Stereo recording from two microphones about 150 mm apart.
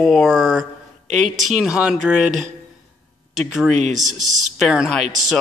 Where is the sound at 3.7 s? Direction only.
55° right (ahead or behind).